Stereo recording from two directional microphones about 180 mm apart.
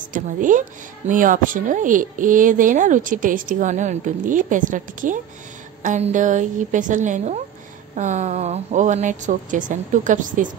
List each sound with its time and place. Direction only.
0.1 s speech: 45° right (ahead or behind)